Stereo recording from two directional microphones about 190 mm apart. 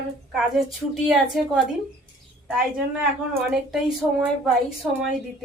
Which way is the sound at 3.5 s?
5° right (ahead or behind).